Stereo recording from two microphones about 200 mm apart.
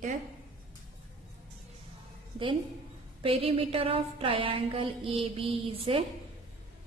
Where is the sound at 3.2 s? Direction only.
30° right (ahead or behind).